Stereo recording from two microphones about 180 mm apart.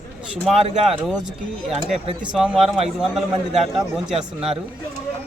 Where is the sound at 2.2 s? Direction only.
5° right (ahead or behind).